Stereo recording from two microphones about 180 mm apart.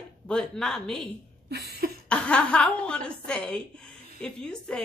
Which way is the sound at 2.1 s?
5° left (ahead or behind).